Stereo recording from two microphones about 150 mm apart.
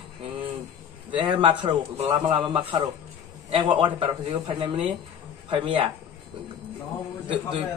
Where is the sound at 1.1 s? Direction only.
30° right (ahead or behind).